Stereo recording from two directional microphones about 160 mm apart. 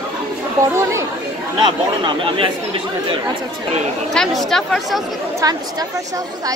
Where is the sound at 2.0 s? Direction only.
35° right (ahead or behind).